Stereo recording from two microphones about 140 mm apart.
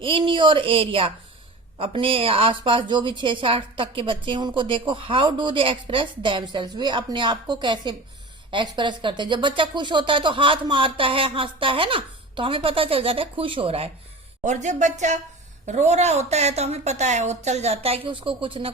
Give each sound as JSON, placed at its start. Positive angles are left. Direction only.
{"t": 0.0, "sound": "a woman's voice", "side_deg": -35}
{"t": 14.4, "sound": "a woman's voice", "side_deg": -60}